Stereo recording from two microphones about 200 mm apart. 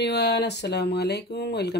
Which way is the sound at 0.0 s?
55° left (ahead or behind).